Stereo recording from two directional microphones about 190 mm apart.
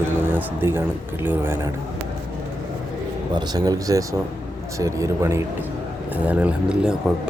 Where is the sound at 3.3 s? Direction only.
20° right (ahead or behind).